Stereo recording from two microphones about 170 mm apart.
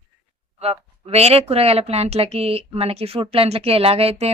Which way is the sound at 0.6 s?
35° right (ahead or behind).